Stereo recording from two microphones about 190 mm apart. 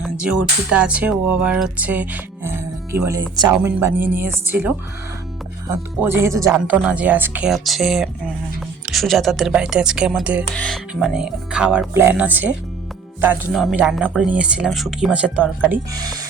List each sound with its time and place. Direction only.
0.0 s speech: 5° right (ahead or behind); by 3.7 s 20° right (ahead or behind)
3.8 s speech: 10° right (ahead or behind)
16.0 s speech: 20° right (ahead or behind)